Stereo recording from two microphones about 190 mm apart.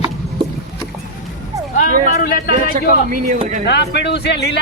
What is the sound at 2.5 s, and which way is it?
Speech, 45° right (ahead or behind).